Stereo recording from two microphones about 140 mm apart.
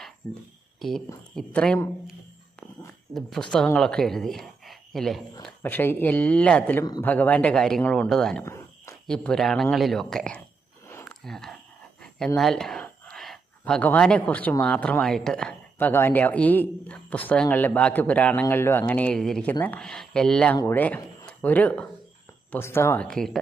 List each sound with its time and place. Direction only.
0.2 s speech: 20° left (ahead or behind)
0.8 s speech: centre (ahead or behind)
3.2 s speech: centre (ahead or behind)
5.6 s speech: 15° left (ahead or behind)
8.4 s a sound: 20° left (ahead or behind)
9.0 s speech: 5° left (ahead or behind)
13.1 s a sound: centre (ahead or behind)
14.6 s speech: 10° left (ahead or behind)
15.9 s speech: 15° left (ahead or behind)
23.0 s speech: 5° left (ahead or behind)